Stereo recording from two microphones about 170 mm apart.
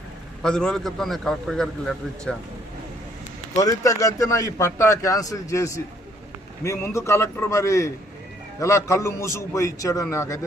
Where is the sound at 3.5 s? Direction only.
20° left (ahead or behind).